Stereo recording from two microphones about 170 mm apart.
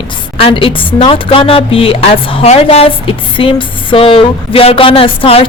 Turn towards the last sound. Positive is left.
turn(degrees=35)  # may be behind; listen again after turning